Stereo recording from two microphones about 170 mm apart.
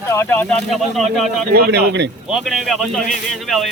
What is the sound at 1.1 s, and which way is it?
Speech, centre (ahead or behind).